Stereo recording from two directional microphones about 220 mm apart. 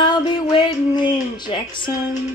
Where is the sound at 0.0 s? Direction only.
20° left (ahead or behind).